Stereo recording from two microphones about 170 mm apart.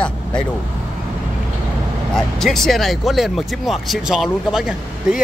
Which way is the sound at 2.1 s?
Centre (ahead or behind).